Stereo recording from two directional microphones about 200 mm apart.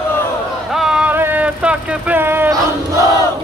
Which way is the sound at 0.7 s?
5° right (ahead or behind).